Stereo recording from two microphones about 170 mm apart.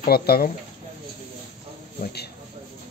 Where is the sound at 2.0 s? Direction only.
70° left (ahead or behind).